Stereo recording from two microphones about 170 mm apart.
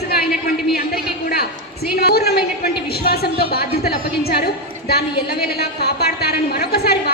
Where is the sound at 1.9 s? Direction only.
65° left (ahead or behind).